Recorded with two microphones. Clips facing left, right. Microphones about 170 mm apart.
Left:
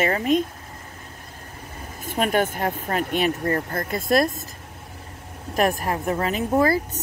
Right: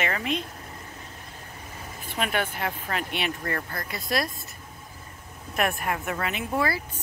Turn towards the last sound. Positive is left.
turn(degrees=40)  # may be behind; listen again after turning